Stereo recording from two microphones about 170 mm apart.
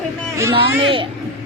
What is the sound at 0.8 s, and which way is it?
Speech, 30° right (ahead or behind).